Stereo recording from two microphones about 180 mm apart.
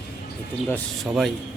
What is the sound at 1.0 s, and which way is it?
Speech, centre (ahead or behind).